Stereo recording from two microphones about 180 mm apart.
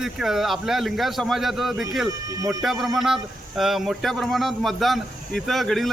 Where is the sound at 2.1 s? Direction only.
20° right (ahead or behind).